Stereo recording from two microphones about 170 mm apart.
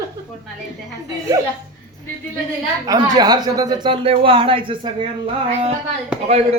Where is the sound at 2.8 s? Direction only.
20° right (ahead or behind).